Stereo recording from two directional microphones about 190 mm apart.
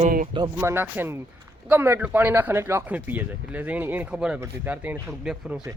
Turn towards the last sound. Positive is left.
turn(degrees=-10)  # may be behind; listen again after turning